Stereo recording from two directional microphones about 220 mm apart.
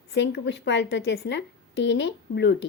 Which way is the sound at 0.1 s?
50° left (ahead or behind).